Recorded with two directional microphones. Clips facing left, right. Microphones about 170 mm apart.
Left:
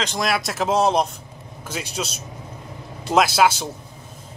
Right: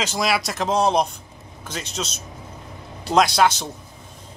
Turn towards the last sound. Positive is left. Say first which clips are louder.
# even
turn(degrees=5)  # may be behind; listen again after turning